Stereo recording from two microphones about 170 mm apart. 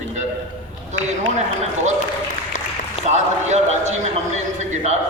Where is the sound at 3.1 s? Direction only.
45° right (ahead or behind).